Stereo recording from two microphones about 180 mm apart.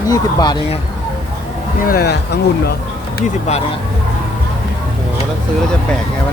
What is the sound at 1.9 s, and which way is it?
Speech, 65° left (ahead or behind).